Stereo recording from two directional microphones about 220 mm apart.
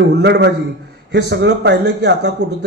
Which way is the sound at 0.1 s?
50° right (ahead or behind).